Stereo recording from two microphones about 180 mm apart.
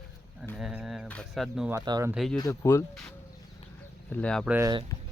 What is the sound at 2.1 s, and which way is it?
Speech, centre (ahead or behind).